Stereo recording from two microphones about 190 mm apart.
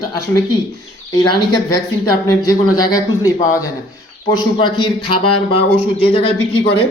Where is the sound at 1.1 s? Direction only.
20° left (ahead or behind).